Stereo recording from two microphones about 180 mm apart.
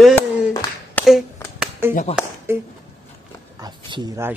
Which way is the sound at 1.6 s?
10° right (ahead or behind).